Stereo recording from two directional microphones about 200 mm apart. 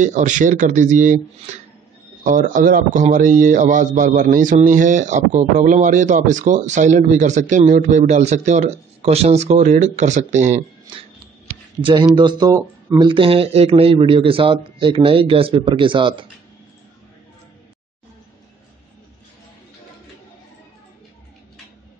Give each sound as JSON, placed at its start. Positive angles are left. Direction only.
{"t": 0.0, "sound": "a man's voice", "side_deg": -35}
{"t": 2.2, "sound": "a man's voice", "side_deg": -40}
{"t": 11.8, "sound": "a man's voice", "side_deg": -25}
{"t": 13.1, "sound": "a man's voice", "side_deg": -30}